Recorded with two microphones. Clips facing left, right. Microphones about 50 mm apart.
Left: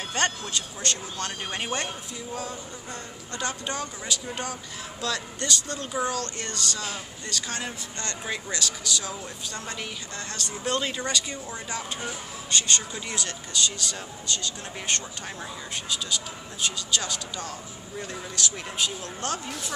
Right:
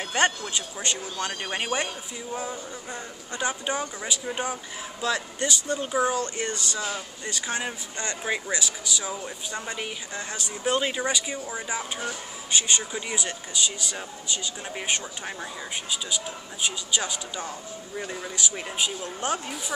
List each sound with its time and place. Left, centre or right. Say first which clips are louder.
0.0 s speech: right 3 dB; centre
16.6 s speech: right 1 dB; centre